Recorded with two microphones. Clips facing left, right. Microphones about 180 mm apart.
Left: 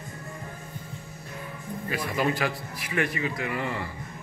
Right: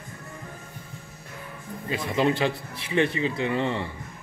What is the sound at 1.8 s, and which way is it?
A man's voice, 25° right (ahead or behind).